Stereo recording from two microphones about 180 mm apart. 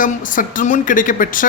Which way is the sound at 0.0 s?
45° left (ahead or behind).